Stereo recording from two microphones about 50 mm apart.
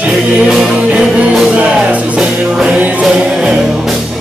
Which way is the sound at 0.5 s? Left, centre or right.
Centre.